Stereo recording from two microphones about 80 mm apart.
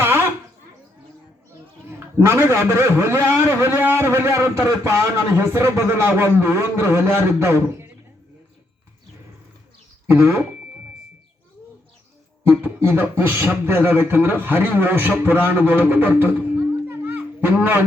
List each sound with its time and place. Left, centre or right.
0.0 s a sound: right
1.9 s a man's voice: right
10.1 s a man's voice: right
12.5 s speech: right
16.9 s music: right